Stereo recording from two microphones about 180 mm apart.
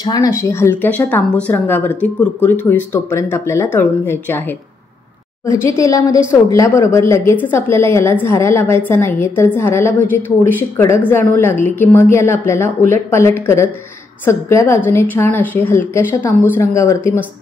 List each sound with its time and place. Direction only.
0.0 s a woman's voice: 20° left (ahead or behind)
11.1 s a woman's voice: 15° left (ahead or behind)